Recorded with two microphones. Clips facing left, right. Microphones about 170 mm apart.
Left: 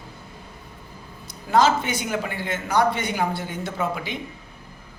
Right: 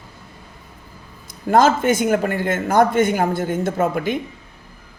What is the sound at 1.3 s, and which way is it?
Speech, 50° right (ahead or behind).